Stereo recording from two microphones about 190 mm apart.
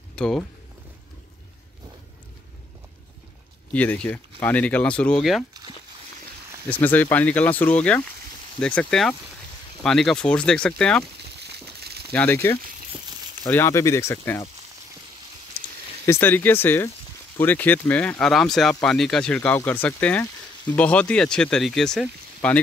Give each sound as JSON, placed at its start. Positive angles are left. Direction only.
{"t": 0.1, "sound": "speech", "side_deg": 5}
{"t": 3.7, "sound": "speech", "side_deg": 5}
{"t": 6.7, "sound": "speech", "side_deg": 10}
{"t": 11.3, "sound": "a sound", "side_deg": -60}
{"t": 12.1, "sound": "speech", "side_deg": 10}
{"t": 16.1, "sound": "speech", "side_deg": 10}